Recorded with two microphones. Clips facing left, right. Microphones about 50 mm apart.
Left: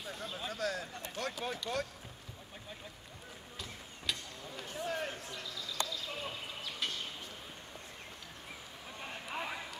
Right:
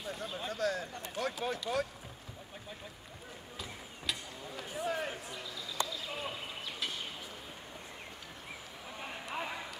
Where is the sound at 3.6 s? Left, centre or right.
Centre.